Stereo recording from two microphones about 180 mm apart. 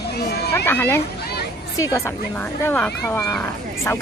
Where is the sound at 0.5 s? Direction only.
10° left (ahead or behind).